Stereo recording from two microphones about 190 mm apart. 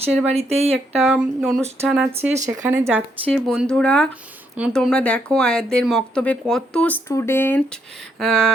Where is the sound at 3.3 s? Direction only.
5° left (ahead or behind).